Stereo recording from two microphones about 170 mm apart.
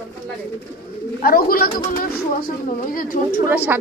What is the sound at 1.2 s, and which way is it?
Speech, 60° left (ahead or behind).